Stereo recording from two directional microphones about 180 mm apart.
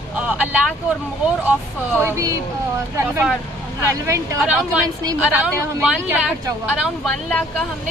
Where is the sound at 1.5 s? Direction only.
10° right (ahead or behind).